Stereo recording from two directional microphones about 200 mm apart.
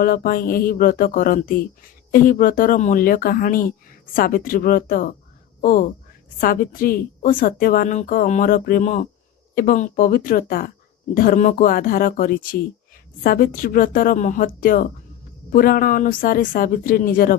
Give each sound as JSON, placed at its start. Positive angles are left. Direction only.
{"t": 0.0, "sound": "a woman's voice", "side_deg": 45}
{"t": 6.4, "sound": "a woman's voice", "side_deg": 45}